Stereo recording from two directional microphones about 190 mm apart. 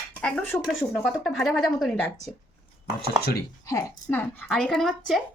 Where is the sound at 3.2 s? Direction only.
55° left (ahead or behind).